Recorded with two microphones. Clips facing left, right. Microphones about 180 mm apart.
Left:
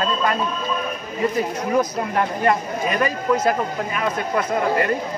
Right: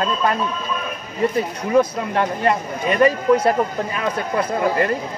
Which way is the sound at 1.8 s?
30° right (ahead or behind).